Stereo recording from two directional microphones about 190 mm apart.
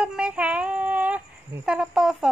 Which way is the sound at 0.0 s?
5° right (ahead or behind).